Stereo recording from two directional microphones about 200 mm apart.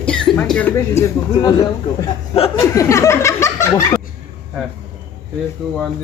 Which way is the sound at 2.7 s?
15° left (ahead or behind).